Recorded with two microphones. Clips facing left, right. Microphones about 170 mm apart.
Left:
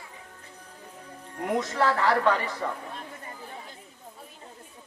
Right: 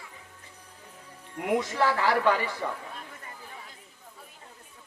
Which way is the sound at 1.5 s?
15° right (ahead or behind).